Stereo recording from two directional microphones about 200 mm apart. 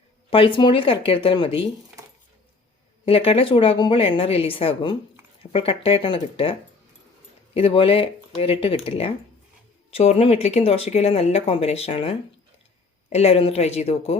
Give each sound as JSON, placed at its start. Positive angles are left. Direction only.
{"t": 0.3, "sound": "a woman's voice", "side_deg": 25}
{"t": 3.1, "sound": "a woman's voice", "side_deg": 30}